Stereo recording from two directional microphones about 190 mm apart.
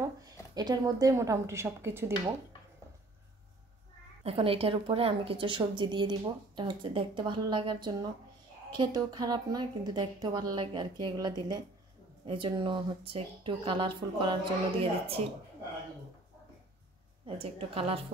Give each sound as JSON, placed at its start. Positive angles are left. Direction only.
{"t": 0.6, "sound": "speech", "side_deg": -20}
{"t": 4.2, "sound": "a woman's voice", "side_deg": -30}
{"t": 17.4, "sound": "a woman's voice", "side_deg": -30}